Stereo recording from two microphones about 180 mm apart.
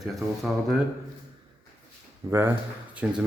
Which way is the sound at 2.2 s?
20° right (ahead or behind).